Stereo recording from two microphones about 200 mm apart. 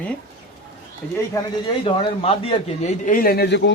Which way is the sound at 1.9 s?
30° left (ahead or behind).